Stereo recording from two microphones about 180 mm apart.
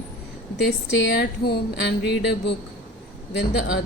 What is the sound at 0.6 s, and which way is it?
Speech, 65° left (ahead or behind).